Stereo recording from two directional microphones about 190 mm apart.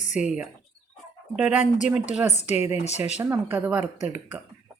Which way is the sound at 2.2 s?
35° left (ahead or behind).